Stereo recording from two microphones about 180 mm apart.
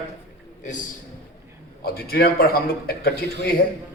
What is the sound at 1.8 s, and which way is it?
A man's voice, 55° left (ahead or behind).